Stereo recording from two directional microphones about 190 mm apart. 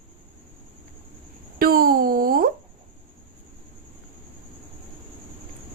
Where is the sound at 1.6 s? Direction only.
50° right (ahead or behind).